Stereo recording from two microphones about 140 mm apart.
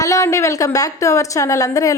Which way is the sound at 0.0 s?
20° left (ahead or behind).